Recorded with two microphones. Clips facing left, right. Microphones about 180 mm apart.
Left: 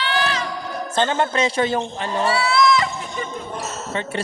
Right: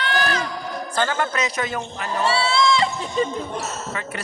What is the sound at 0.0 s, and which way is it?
Music, 45° right (ahead or behind).